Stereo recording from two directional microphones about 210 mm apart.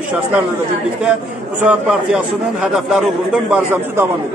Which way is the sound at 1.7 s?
5° right (ahead or behind).